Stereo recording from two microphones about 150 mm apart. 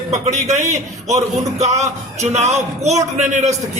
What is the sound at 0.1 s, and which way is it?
A man's voice, 50° right (ahead or behind).